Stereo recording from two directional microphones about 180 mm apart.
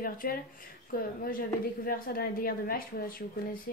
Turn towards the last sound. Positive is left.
turn(degrees=55)  # may be behind; listen again after turning